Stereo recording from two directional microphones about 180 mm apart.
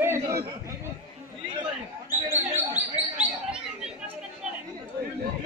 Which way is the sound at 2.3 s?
40° right (ahead or behind).